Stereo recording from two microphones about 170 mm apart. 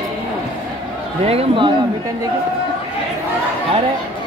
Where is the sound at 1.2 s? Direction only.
35° right (ahead or behind).